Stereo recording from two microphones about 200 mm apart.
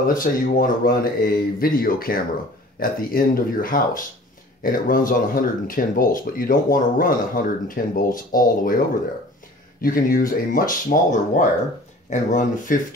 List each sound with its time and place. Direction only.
0.1 s speech: 45° left (ahead or behind)